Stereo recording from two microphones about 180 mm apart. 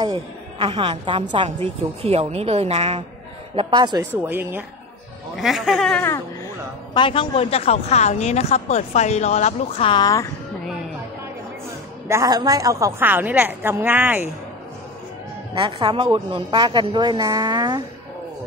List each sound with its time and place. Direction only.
0.0 s a woman's voice: 25° right (ahead or behind)
3.5 s speech: 25° right (ahead or behind)
4.2 s a woman's voice: 10° right (ahead or behind); by 6.2 s 10° left (ahead or behind)
6.9 s a woman's voice: 30° left (ahead or behind)
12.1 s a woman's voice: 20° right (ahead or behind)
15.5 s speech: 30° right (ahead or behind)